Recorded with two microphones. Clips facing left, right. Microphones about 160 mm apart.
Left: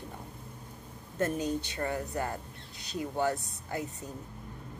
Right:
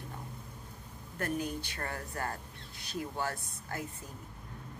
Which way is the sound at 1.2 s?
20° left (ahead or behind).